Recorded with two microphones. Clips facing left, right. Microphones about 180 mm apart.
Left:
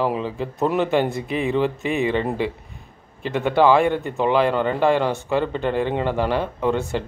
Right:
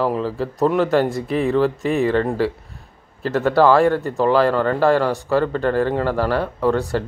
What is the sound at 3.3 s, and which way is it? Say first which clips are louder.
Speech: right 2 dB; 15° left (ahead or behind).